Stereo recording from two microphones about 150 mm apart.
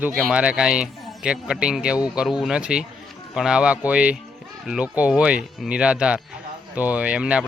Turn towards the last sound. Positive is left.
turn(degrees=-5)  # may be behind; listen again after turning